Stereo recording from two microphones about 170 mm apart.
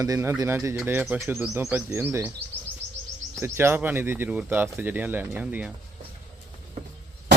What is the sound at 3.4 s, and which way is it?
Speech, 15° right (ahead or behind).